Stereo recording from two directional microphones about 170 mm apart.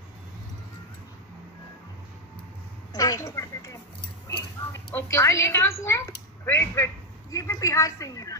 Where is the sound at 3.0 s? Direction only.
20° left (ahead or behind).